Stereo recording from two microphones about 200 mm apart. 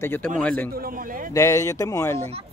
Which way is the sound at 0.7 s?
45° right (ahead or behind).